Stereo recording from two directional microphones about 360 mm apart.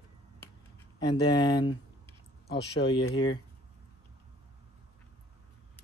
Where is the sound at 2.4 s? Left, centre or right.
Left.